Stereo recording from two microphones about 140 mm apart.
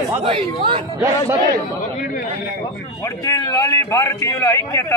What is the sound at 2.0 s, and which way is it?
Speech, 90° left.